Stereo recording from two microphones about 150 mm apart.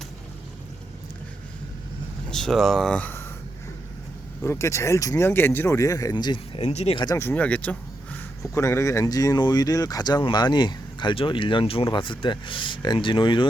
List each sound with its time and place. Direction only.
2.3 s speech: 5° left (ahead or behind)
2.9 s speech: 10° left (ahead or behind)
4.4 s speech: 20° left (ahead or behind)
6.6 s speech: 45° left (ahead or behind)
7.2 s speech: 10° left (ahead or behind)
8.4 s speech: 20° left (ahead or behind)